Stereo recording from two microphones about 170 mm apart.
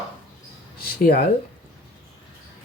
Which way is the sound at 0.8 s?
65° left (ahead or behind).